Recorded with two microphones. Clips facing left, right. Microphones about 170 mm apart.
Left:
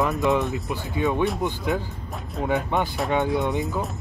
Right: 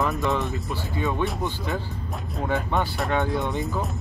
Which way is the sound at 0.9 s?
15° left (ahead or behind).